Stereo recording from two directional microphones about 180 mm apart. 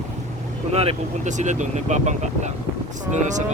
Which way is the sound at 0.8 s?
35° right (ahead or behind).